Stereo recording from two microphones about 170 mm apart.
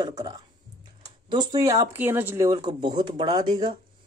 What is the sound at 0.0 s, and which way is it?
Speech, 25° right (ahead or behind).